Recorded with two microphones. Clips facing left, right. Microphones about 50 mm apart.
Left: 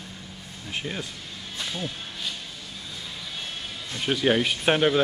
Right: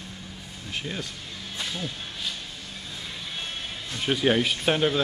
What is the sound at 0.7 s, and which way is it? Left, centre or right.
Speech, centre.